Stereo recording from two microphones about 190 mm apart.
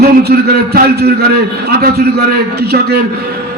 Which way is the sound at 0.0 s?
55° right (ahead or behind).